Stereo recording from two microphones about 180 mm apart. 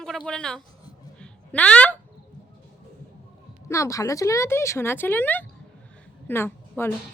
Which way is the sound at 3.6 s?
15° left (ahead or behind).